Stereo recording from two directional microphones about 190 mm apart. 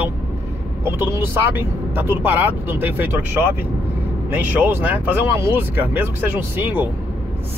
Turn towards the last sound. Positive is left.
turn(degrees=-10)  # may be behind; listen again after turning